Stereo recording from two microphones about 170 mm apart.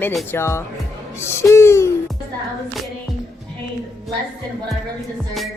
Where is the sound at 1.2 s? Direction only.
15° left (ahead or behind).